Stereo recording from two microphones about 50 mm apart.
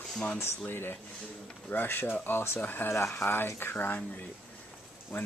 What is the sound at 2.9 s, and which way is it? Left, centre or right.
Speech, left.